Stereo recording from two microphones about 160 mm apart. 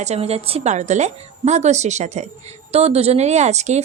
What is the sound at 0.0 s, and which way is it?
A woman's voice, 40° right (ahead or behind).